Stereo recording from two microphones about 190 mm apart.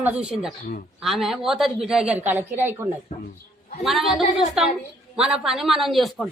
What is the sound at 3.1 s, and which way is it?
Speech, 30° left (ahead or behind).